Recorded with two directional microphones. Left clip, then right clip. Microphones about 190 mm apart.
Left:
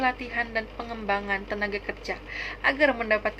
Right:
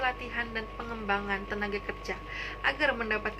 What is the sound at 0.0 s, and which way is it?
A woman's voice, 20° left (ahead or behind).